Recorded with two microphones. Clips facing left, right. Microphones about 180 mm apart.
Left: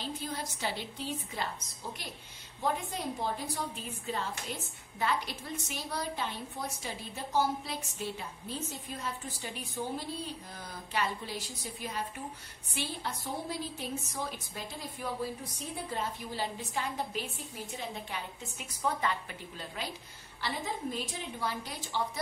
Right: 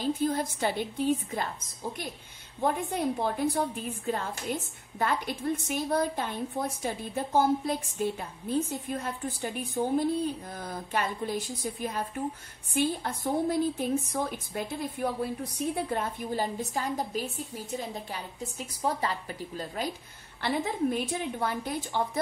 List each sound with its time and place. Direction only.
0.0 s a woman's voice: 50° right (ahead or behind)
2.6 s a woman's voice: 55° right (ahead or behind); by 19.9 s 40° right (ahead or behind)
20.4 s a woman's voice: 55° right (ahead or behind)